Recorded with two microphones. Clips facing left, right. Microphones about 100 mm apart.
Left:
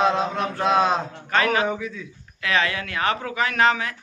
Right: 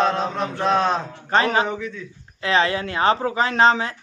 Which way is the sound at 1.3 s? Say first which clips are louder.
Right 2 dB; 30° right (ahead or behind).